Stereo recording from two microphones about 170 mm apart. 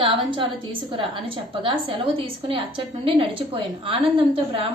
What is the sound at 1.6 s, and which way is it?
A woman's voice, 30° right (ahead or behind).